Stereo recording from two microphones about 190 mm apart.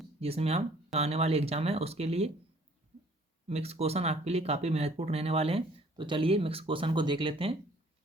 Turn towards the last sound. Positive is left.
turn(degrees=-30)  # may be behind; listen again after turning